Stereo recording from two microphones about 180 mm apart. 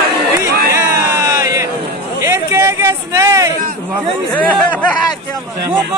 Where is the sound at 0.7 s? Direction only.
20° right (ahead or behind).